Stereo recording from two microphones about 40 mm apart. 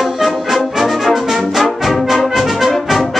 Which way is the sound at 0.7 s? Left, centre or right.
Centre.